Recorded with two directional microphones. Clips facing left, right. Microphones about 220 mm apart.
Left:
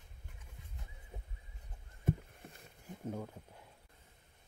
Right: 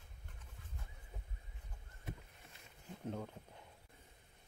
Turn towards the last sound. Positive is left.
turn(degrees=10)  # may be behind; listen again after turning